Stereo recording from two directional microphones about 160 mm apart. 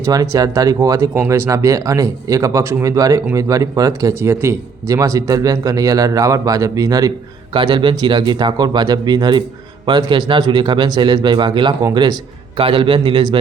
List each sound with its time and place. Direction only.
0.0 s a man's voice: 25° right (ahead or behind)